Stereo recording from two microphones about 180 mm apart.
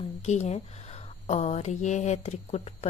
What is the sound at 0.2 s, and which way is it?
Speech, 40° left (ahead or behind).